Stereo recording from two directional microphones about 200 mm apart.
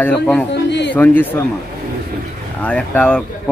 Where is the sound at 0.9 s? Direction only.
10° left (ahead or behind).